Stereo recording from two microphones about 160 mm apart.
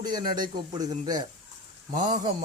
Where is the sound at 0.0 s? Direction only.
25° right (ahead or behind).